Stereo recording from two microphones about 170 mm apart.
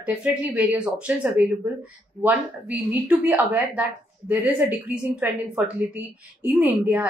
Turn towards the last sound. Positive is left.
turn(degrees=-10)  # may be behind; listen again after turning